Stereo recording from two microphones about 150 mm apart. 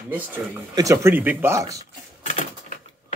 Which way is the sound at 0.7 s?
20° right (ahead or behind).